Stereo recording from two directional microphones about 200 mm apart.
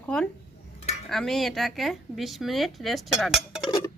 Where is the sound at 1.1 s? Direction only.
Centre (ahead or behind).